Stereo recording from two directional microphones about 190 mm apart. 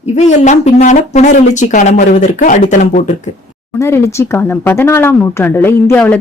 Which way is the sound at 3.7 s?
15° left (ahead or behind).